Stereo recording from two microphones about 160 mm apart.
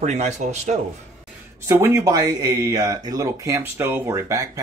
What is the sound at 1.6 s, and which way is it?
Speech, 15° right (ahead or behind).